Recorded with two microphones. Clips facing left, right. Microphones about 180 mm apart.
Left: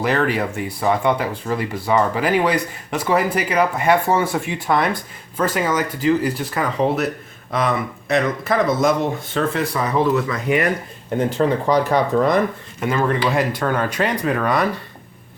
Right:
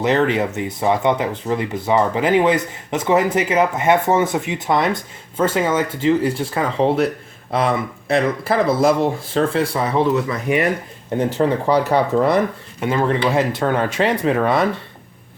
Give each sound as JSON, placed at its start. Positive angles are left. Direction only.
{"t": 0.0, "sound": "speech", "side_deg": -25}